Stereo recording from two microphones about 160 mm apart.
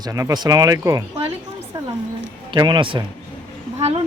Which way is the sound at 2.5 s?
30° right (ahead or behind).